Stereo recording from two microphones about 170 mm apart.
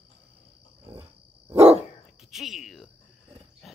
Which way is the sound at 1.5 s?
35° right (ahead or behind).